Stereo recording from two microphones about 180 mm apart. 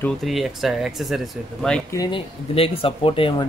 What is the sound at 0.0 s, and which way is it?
Speech, centre (ahead or behind).